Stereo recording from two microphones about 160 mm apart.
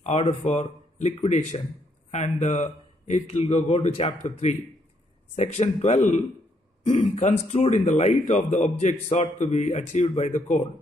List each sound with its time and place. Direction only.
0.0 s speech: 45° left (ahead or behind)